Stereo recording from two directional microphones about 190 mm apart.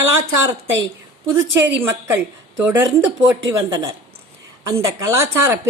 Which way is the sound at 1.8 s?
10° right (ahead or behind).